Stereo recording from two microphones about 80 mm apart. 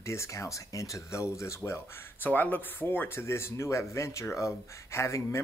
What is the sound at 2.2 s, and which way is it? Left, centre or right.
Speech, left.